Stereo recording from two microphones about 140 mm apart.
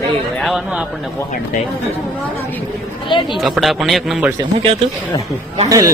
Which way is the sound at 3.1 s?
35° left (ahead or behind).